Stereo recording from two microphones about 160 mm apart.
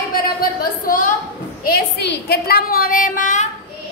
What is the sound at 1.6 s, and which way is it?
A woman's voice, 80° left.